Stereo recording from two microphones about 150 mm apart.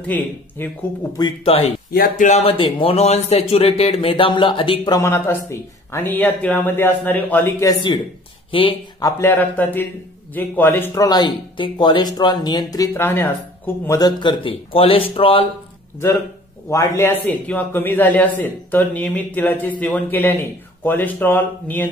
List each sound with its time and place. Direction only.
0.0 s a man's voice: 10° left (ahead or behind)
1.4 s speech: 40° left (ahead or behind)
1.9 s speech: 80° left
2.2 s speech: 45° left (ahead or behind)
5.0 s a man's voice: 15° left (ahead or behind)
8.5 s speech: 35° left (ahead or behind)
9.0 s a man's voice: 15° left (ahead or behind)
11.1 s speech: 30° left (ahead or behind)
13.8 s speech: 25° left (ahead or behind)
16.7 s a man's voice: 15° left (ahead or behind)